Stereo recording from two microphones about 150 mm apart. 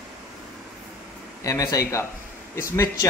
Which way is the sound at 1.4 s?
20° left (ahead or behind).